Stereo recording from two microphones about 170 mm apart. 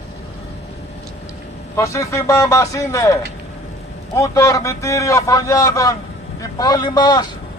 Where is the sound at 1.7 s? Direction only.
15° left (ahead or behind).